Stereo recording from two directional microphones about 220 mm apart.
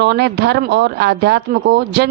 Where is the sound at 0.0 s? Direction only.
50° right (ahead or behind).